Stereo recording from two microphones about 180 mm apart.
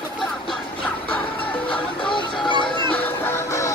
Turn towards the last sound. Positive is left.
turn(degrees=15)  # may be behind; listen again after turning